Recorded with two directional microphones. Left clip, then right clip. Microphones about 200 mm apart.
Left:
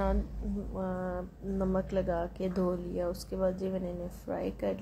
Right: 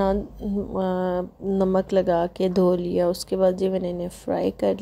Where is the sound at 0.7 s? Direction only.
50° right (ahead or behind).